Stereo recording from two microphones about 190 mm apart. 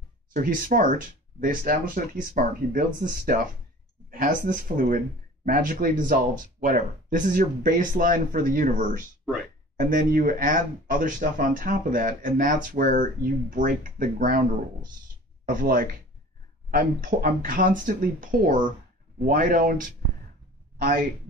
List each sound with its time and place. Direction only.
0.3 s speech: 45° right (ahead or behind)
15.4 s speech: 45° right (ahead or behind)